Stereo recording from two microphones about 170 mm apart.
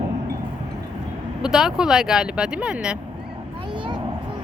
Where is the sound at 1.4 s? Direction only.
5° right (ahead or behind).